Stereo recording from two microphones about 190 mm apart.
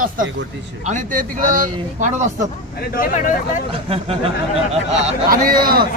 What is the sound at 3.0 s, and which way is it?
Speech, 40° left (ahead or behind).